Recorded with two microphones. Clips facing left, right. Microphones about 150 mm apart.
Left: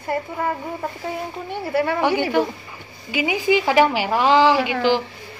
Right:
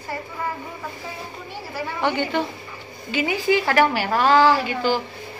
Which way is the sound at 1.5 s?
60° left (ahead or behind).